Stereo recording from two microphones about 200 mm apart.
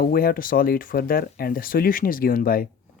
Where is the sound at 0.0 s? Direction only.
50° left (ahead or behind).